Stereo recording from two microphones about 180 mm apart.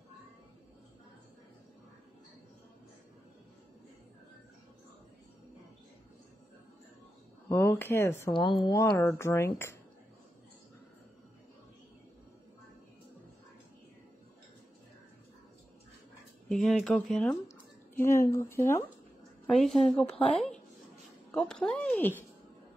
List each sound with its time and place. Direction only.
7.4 s speech: 15° left (ahead or behind)
8.3 s a woman's voice: 25° left (ahead or behind)
8.9 s speech: 10° left (ahead or behind)
16.4 s speech: centre (ahead or behind)
19.4 s a woman's voice: centre (ahead or behind)